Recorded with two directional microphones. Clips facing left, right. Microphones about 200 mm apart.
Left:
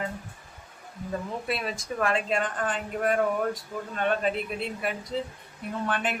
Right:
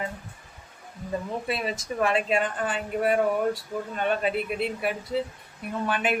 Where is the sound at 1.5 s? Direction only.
Centre (ahead or behind).